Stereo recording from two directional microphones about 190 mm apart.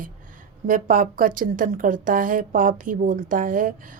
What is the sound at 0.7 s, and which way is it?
A woman's voice, 45° right (ahead or behind).